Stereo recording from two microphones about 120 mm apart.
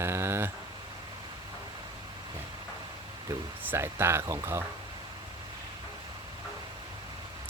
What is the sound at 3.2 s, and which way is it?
Speech, 20° right (ahead or behind).